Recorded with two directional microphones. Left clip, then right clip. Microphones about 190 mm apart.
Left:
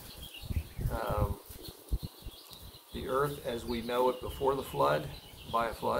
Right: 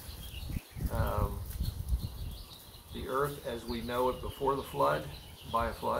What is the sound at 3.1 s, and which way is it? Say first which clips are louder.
Speech: left 1 dB; 15° left (ahead or behind).